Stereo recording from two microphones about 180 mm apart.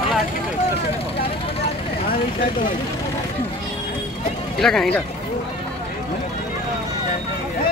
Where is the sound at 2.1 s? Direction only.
50° left (ahead or behind).